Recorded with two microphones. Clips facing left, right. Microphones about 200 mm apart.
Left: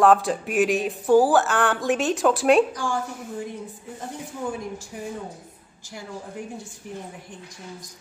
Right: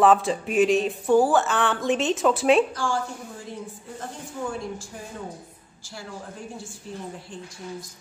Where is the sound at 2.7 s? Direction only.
15° left (ahead or behind).